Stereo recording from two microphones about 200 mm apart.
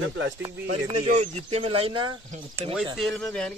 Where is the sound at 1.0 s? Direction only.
35° right (ahead or behind).